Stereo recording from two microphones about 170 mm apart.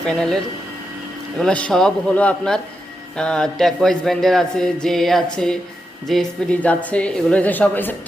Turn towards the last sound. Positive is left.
turn(degrees=10)  # may be behind; listen again after turning